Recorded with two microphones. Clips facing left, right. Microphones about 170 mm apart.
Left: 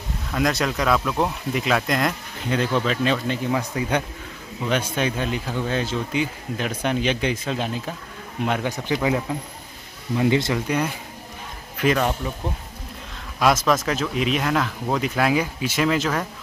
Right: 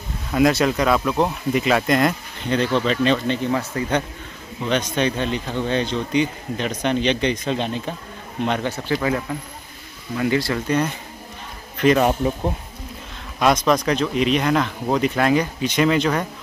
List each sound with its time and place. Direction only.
0.3 s speech: 5° right (ahead or behind); by 10.6 s 20° left (ahead or behind)
10.7 s speech: 10° left (ahead or behind)
11.7 s a sound: 5° left (ahead or behind)
13.4 s speech: centre (ahead or behind)